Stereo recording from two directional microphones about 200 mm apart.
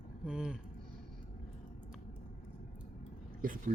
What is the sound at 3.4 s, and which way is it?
Speech, 45° right (ahead or behind).